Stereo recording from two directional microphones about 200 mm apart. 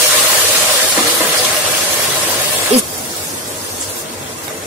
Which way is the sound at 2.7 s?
30° right (ahead or behind).